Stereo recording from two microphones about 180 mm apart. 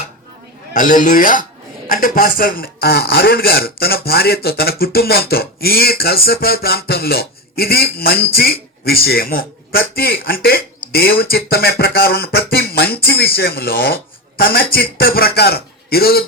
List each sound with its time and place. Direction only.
0.7 s a man's voice: 45° left (ahead or behind)